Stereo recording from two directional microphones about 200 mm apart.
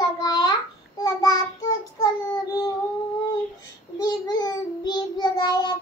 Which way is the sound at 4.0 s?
20° left (ahead or behind).